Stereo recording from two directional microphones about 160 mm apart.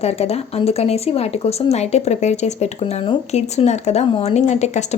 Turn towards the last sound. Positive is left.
turn(degrees=45)  # may be behind; listen again after turning